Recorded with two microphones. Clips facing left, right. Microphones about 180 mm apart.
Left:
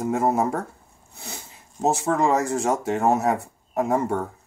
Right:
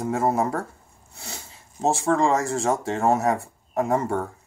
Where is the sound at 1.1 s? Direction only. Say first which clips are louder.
Left 1 dB; 15° left (ahead or behind).